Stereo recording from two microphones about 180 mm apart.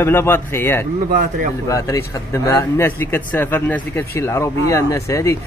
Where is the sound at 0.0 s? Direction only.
15° left (ahead or behind).